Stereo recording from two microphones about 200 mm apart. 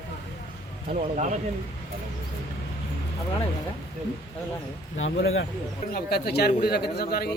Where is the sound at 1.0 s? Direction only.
35° right (ahead or behind).